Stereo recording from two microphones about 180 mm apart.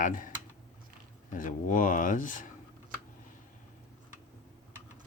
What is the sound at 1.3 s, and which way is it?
Speech, 45° left (ahead or behind).